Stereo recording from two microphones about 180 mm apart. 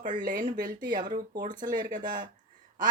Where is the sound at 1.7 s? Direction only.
50° right (ahead or behind).